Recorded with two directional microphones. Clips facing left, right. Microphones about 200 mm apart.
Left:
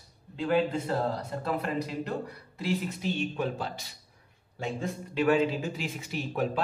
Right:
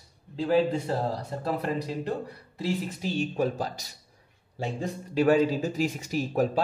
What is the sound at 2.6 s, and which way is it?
Speech, 40° right (ahead or behind).